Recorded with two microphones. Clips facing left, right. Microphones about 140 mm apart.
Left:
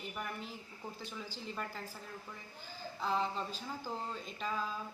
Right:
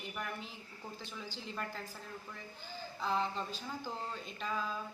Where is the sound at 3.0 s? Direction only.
10° left (ahead or behind).